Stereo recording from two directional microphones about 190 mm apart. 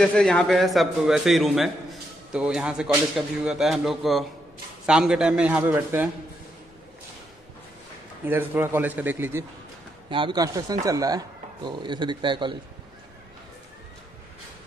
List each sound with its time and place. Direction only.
0.0 s a man's voice: 5° left (ahead or behind)
8.3 s a man's voice: 10° right (ahead or behind)
10.0 s speech: 25° right (ahead or behind)